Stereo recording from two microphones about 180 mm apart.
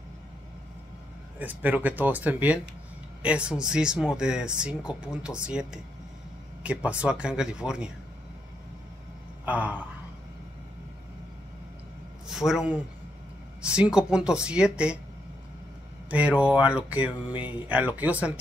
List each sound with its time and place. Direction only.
1.4 s speech: 10° right (ahead or behind)
9.5 s speech: 10° right (ahead or behind)
12.3 s a man's voice: centre (ahead or behind)
16.1 s speech: 5° right (ahead or behind)